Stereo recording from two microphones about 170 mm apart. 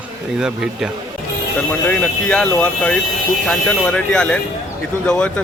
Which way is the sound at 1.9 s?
10° left (ahead or behind).